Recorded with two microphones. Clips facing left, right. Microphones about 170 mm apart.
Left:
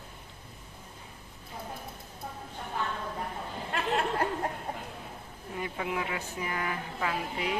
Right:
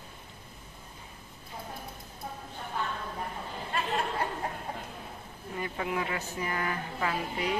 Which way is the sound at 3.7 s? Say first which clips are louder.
Left 2 dB; 70° left (ahead or behind).